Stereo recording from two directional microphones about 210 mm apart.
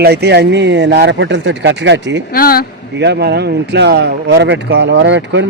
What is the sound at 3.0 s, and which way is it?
Speech, 50° right (ahead or behind).